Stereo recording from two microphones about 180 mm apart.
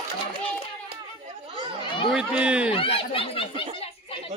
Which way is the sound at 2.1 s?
5° right (ahead or behind).